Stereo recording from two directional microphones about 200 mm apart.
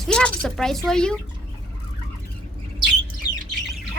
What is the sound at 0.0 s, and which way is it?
Speech, 5° left (ahead or behind).